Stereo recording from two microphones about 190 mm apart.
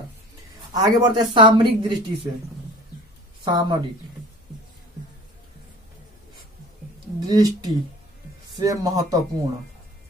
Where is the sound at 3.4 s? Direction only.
25° right (ahead or behind).